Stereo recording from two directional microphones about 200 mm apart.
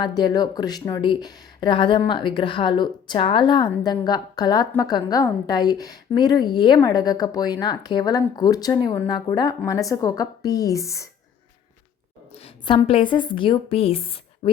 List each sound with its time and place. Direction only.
0.0 s a woman's voice: 20° left (ahead or behind)
12.3 s a woman's voice: 25° left (ahead or behind)